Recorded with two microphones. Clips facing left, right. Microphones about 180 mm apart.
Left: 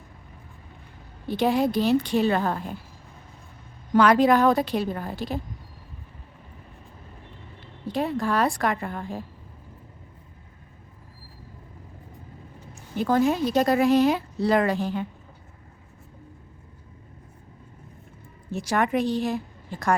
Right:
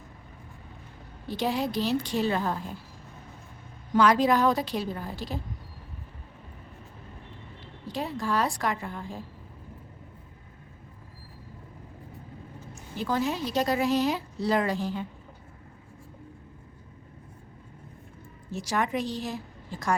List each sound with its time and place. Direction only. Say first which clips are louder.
1.3 s a woman's voice: left 6 dB; 55° left (ahead or behind)
3.9 s a woman's voice: left 4 dB; 60° left (ahead or behind)
7.9 s a woman's voice: left 5 dB; 55° left (ahead or behind)
13.0 s a woman's voice: left 7 dB; 50° left (ahead or behind)
18.5 s a woman's voice: left 5 dB; 55° left (ahead or behind)